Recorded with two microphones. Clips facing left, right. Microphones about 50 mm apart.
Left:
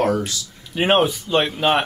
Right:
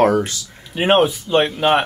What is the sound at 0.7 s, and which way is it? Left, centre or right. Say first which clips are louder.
Speech: right 2 dB; centre.